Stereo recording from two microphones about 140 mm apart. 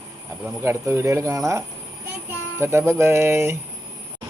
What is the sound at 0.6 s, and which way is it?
Speech, 20° right (ahead or behind).